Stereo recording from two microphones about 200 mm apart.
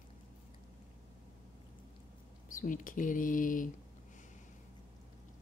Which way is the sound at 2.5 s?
40° left (ahead or behind).